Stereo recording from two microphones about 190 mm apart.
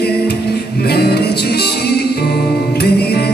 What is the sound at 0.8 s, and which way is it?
Music, 55° left (ahead or behind).